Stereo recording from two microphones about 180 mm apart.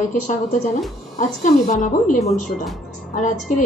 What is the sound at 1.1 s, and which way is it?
A woman's voice, 45° left (ahead or behind).